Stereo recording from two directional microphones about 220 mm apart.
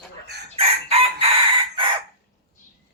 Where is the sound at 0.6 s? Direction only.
25° right (ahead or behind).